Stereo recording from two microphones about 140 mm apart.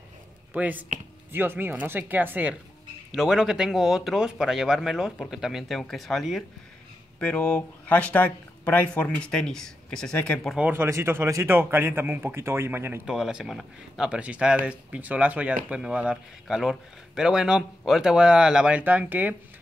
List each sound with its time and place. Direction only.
0.5 s speech: 10° right (ahead or behind); by 10.5 s 10° left (ahead or behind)
10.5 s speech: 10° right (ahead or behind)
13.1 s speech: 5° right (ahead or behind)